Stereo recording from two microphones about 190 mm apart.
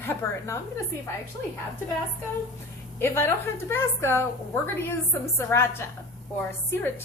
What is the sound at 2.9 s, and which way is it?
Speech, 10° left (ahead or behind).